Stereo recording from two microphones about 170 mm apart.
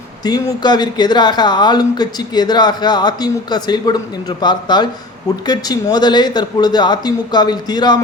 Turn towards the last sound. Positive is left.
turn(degrees=25)  # may be behind; listen again after turning